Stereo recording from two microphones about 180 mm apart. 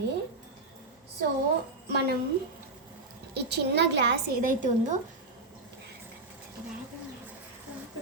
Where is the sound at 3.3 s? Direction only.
65° right (ahead or behind).